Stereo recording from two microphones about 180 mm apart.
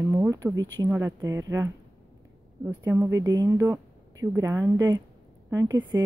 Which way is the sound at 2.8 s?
15° right (ahead or behind).